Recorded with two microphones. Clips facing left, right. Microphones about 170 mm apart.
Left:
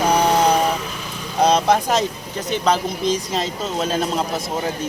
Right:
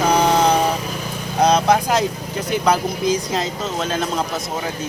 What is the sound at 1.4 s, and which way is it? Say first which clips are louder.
Speech: right 1 dB; 5° left (ahead or behind).